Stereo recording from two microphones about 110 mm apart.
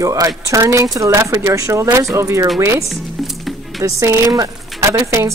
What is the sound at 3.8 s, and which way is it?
Speech, 30° right (ahead or behind).